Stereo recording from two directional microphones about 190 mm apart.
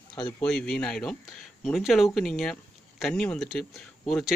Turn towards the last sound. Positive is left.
turn(degrees=0)  # may be behind; listen again after turning